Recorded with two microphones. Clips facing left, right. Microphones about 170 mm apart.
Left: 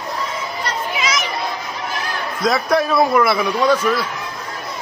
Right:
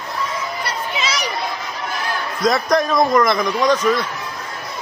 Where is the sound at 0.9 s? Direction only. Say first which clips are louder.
Left 1 dB; 30° right (ahead or behind).